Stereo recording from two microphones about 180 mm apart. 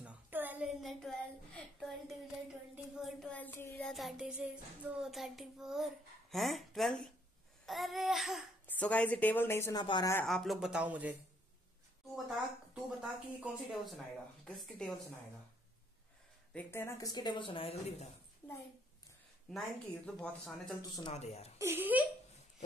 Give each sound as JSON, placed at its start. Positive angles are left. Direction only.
{"t": 0.0, "sound": "a sound", "side_deg": -10}
{"t": 2.7, "sound": "child singing", "side_deg": -5}
{"t": 6.3, "sound": "a woman's voice", "side_deg": 0}
{"t": 10.2, "sound": "speech", "side_deg": 0}
{"t": 13.0, "sound": "speech", "side_deg": 0}
{"t": 16.5, "sound": "speech", "side_deg": 15}
{"t": 19.5, "sound": "speech", "side_deg": 0}
{"t": 21.1, "sound": "speech", "side_deg": 35}
{"t": 21.5, "sound": "speech", "side_deg": -10}